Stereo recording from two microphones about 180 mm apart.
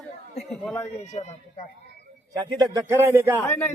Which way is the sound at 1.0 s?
40° left (ahead or behind).